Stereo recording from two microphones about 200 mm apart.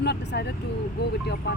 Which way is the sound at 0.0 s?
55° left (ahead or behind).